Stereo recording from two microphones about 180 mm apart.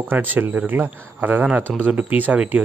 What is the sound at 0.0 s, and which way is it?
Speech, 10° right (ahead or behind).